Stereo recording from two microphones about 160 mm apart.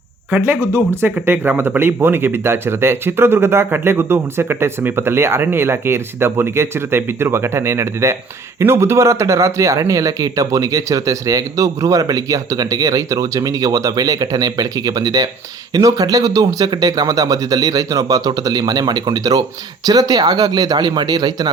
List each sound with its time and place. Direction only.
0.3 s speech: 10° right (ahead or behind)